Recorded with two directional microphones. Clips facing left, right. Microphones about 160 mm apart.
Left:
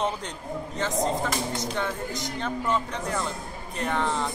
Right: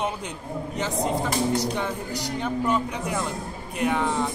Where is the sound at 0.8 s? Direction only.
10° right (ahead or behind).